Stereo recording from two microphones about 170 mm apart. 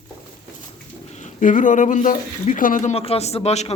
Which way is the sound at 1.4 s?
50° left (ahead or behind).